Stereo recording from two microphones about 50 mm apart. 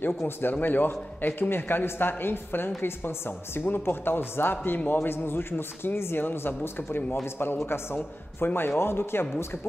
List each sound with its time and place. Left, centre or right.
0.4 s speech: left